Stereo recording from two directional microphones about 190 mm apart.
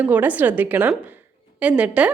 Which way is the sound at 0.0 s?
10° right (ahead or behind).